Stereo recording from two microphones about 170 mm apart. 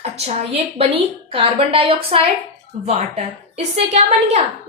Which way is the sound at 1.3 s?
30° right (ahead or behind).